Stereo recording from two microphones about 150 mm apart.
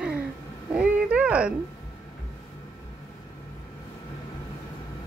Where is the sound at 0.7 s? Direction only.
10° right (ahead or behind).